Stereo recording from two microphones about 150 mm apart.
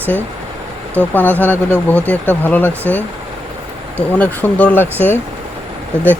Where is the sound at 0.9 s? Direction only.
10° left (ahead or behind).